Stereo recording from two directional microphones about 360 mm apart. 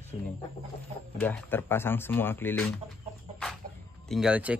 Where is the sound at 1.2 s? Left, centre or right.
Centre.